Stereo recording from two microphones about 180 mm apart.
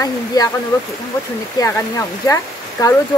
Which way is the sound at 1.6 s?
15° left (ahead or behind).